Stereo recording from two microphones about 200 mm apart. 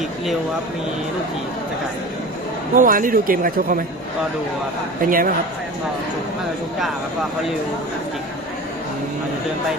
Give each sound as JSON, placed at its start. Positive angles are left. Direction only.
{"t": 2.7, "sound": "speech", "side_deg": -40}
{"t": 5.0, "sound": "speech", "side_deg": -45}